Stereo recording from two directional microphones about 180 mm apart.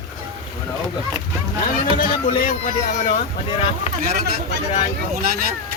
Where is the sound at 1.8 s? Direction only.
55° left (ahead or behind); by 3.9 s 35° left (ahead or behind).